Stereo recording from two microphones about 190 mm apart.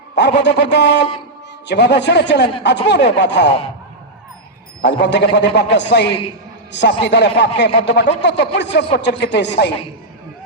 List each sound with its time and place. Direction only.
0.2 s a man's voice: 65° left (ahead or behind)
4.8 s a man's voice: 65° left (ahead or behind)